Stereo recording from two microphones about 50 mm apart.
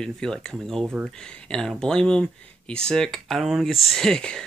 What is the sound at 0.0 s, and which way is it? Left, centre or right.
Speech, centre.